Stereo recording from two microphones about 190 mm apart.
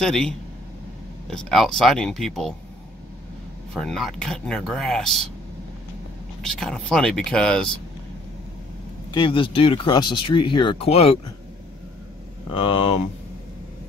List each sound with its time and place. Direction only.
0.0 s speech: 5° left (ahead or behind)
3.7 s speech: centre (ahead or behind)
6.4 s speech: 5° left (ahead or behind)
9.1 s speech: 25° left (ahead or behind)
12.5 s speech: 25° left (ahead or behind)